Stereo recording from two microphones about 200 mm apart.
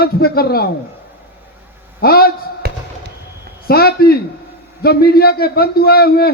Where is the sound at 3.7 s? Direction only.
50° left (ahead or behind).